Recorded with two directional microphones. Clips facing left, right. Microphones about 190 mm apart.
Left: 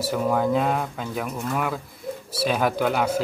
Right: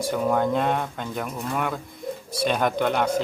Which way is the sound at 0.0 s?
5° left (ahead or behind).